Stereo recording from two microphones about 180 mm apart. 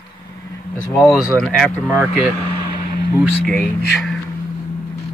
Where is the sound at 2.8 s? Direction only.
60° left (ahead or behind).